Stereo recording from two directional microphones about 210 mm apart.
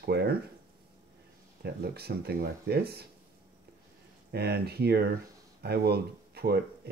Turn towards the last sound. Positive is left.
turn(degrees=-50)  # may be behind; listen again after turning